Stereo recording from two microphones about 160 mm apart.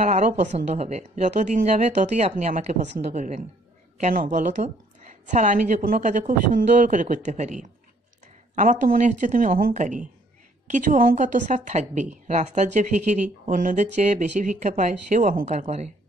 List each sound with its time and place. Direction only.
0.0 s a woman's voice: 50° right (ahead or behind)